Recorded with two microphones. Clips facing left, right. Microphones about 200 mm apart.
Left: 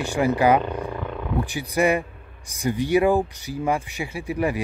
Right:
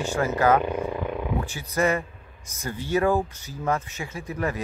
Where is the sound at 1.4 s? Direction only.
15° left (ahead or behind).